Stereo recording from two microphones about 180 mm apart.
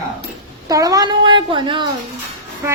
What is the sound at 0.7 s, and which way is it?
Speech, 20° right (ahead or behind).